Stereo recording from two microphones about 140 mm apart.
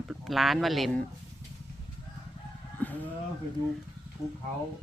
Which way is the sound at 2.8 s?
10° left (ahead or behind).